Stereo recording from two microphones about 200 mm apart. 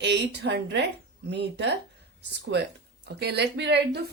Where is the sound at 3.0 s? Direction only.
55° right (ahead or behind).